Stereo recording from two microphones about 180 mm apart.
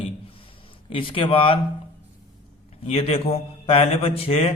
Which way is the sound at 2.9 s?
35° left (ahead or behind).